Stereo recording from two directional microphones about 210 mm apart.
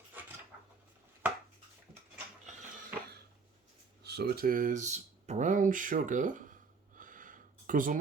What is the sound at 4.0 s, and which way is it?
Speech, 50° right (ahead or behind).